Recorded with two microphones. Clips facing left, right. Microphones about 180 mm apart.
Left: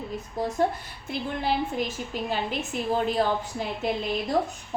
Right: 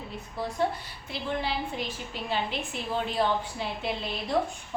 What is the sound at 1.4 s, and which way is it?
A woman's voice, 45° left (ahead or behind).